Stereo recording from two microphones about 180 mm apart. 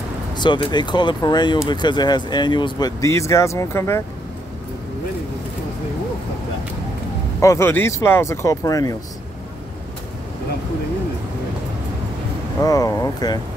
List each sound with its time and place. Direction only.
0.4 s speech: 25° left (ahead or behind)
7.3 s speech: 15° left (ahead or behind)
12.6 s speech: 20° left (ahead or behind)